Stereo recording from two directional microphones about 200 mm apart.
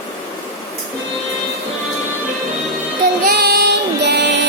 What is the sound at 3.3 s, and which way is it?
Music, 55° right (ahead or behind).